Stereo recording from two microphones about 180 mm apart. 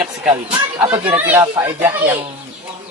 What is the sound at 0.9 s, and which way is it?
Speech, 10° right (ahead or behind).